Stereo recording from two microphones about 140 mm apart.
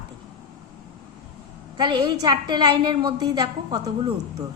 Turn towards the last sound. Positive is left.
turn(degrees=-30)  # may be behind; listen again after turning